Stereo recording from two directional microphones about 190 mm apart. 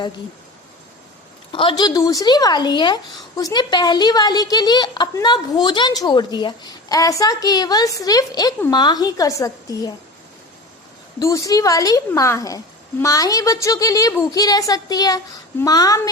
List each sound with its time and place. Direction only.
1.5 s a woman's voice: 25° left (ahead or behind)
11.2 s speech: 15° left (ahead or behind)